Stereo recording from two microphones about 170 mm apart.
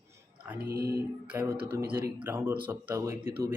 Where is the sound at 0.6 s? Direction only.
65° right (ahead or behind).